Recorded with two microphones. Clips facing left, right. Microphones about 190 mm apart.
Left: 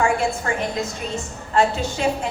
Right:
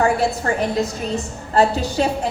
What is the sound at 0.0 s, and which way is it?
A woman's voice, 35° right (ahead or behind).